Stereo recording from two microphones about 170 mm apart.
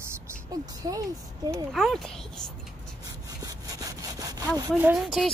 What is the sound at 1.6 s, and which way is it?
Speech, centre (ahead or behind).